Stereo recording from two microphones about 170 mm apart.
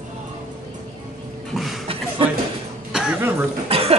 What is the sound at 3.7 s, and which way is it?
Cough, 35° right (ahead or behind).